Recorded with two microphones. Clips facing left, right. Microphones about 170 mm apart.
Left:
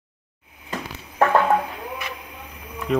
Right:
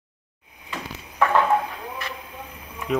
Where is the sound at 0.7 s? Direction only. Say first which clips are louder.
Left 3 dB; 45° left (ahead or behind).